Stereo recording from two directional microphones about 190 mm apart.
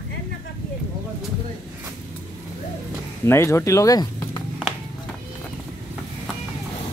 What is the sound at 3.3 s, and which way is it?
Speech, 15° left (ahead or behind).